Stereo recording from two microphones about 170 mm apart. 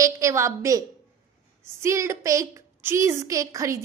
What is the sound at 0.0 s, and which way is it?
A woman's voice, 20° right (ahead or behind).